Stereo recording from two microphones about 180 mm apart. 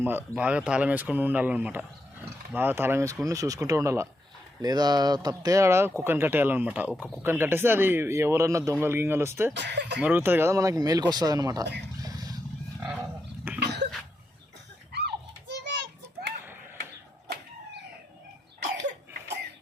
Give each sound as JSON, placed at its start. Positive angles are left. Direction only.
{"t": 0.0, "sound": "speech", "side_deg": -10}
{"t": 9.6, "sound": "speech", "side_deg": -70}
{"t": 10.0, "sound": "speech", "side_deg": -10}
{"t": 12.0, "sound": "vehicle", "side_deg": -20}
{"t": 12.8, "sound": "wild animals", "side_deg": -10}
{"t": 13.6, "sound": "cough", "side_deg": -65}
{"t": 14.9, "sound": "children playing", "side_deg": -70}